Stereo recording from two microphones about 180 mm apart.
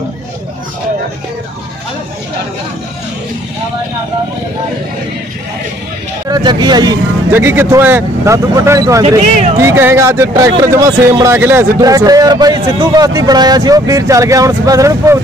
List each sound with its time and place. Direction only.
6.2 s speech: 25° right (ahead or behind)
9.0 s speech: 40° right (ahead or behind)
9.6 s speech: 15° right (ahead or behind)